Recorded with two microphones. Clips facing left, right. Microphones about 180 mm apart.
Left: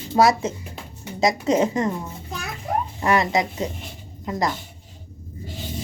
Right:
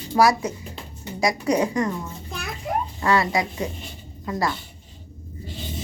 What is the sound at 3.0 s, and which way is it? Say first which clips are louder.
A woman's voice: left 1 dB; 20° left (ahead or behind).